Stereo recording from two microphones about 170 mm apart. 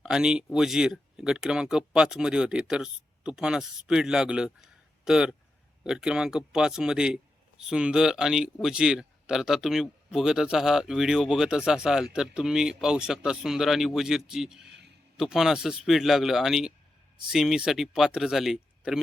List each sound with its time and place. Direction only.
0.0 s speech: 5° right (ahead or behind)